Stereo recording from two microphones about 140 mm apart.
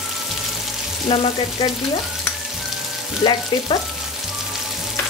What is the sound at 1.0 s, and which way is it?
Frying, 40° left (ahead or behind).